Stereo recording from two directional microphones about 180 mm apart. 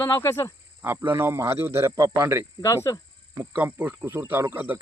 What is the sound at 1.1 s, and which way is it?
Speech, 15° right (ahead or behind).